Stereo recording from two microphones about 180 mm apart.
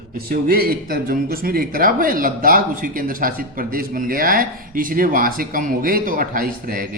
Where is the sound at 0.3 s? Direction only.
55° right (ahead or behind).